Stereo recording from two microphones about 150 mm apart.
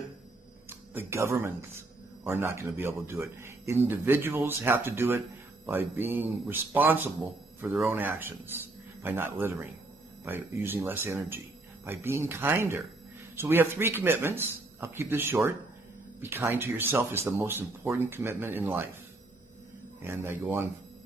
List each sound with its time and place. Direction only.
0.7 s speech: 15° right (ahead or behind)
20.0 s speech: 15° right (ahead or behind)